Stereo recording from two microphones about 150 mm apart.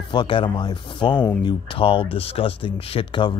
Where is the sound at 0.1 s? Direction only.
30° left (ahead or behind).